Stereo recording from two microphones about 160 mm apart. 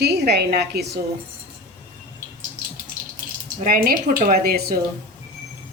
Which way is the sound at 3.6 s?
60° right (ahead or behind).